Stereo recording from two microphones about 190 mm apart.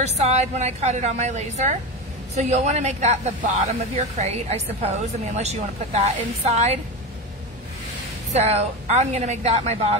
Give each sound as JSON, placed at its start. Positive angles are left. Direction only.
{"t": 0.0, "sound": "speech", "side_deg": -35}
{"t": 8.3, "sound": "speech", "side_deg": -35}